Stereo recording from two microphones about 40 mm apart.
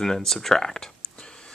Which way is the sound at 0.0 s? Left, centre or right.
Centre.